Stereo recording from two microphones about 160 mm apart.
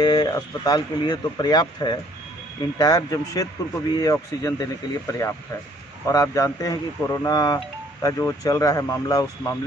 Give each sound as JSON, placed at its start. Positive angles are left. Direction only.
{"t": 0.0, "sound": "speech", "side_deg": 25}